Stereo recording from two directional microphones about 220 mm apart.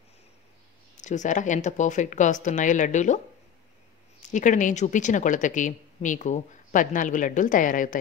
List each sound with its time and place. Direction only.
0.9 s a woman's voice: 35° left (ahead or behind)
4.2 s a woman's voice: 35° left (ahead or behind)